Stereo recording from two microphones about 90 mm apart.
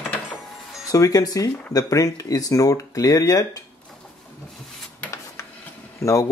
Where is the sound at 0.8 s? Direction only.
40° left (ahead or behind).